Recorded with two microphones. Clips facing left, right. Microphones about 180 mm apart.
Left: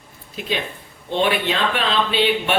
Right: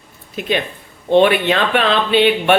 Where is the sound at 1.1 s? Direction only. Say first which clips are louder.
Right 8 dB; 60° right (ahead or behind).